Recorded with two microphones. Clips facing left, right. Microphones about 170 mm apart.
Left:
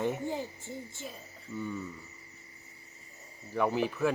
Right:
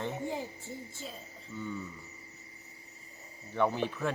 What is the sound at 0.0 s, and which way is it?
Speech, 15° left (ahead or behind).